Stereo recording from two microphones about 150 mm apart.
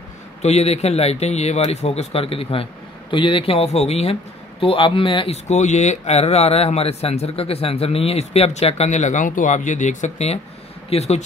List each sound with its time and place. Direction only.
0.4 s a man's voice: 45° left (ahead or behind)